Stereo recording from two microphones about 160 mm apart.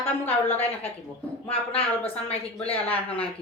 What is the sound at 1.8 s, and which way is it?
Speech, 40° left (ahead or behind).